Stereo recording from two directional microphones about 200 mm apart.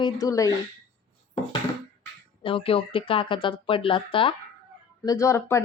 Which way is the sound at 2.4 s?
25° left (ahead or behind).